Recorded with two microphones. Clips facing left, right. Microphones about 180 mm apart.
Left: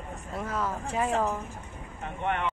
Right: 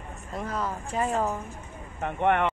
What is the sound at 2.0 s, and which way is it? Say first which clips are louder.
Speech: right 7 dB; 60° right (ahead or behind).